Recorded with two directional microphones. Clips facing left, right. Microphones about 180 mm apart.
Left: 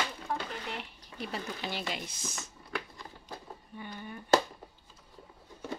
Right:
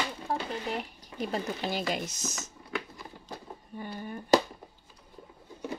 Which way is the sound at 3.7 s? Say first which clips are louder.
Right 5 dB; 40° right (ahead or behind).